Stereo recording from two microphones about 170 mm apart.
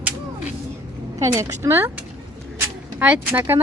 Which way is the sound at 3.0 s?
10° right (ahead or behind).